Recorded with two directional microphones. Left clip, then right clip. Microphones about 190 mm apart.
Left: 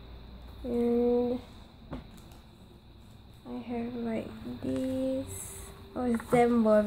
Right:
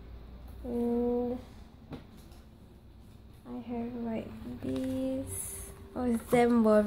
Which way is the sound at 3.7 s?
10° left (ahead or behind).